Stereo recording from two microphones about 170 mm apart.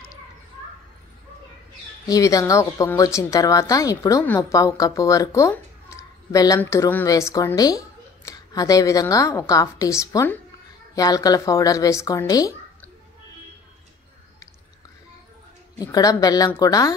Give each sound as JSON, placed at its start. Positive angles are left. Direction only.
{"t": 2.0, "sound": "a woman's voice", "side_deg": 20}
{"t": 15.8, "sound": "a woman's voice", "side_deg": 20}